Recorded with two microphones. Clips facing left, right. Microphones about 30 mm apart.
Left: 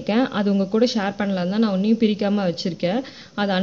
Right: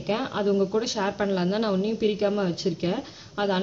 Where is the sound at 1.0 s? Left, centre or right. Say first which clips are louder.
Left 2 dB; centre.